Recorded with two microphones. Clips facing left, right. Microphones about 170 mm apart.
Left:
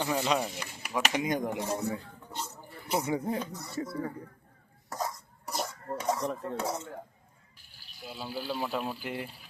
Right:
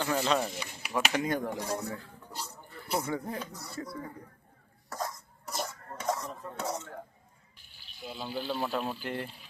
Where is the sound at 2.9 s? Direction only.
5° left (ahead or behind).